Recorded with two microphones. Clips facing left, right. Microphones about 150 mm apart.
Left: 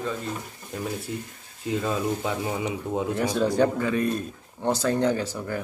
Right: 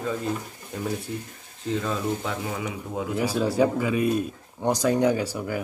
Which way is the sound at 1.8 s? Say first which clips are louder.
Left 1 dB; 20° left (ahead or behind).